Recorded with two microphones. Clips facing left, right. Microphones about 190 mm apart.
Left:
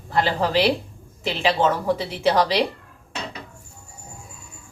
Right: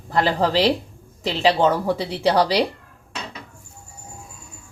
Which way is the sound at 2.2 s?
35° right (ahead or behind).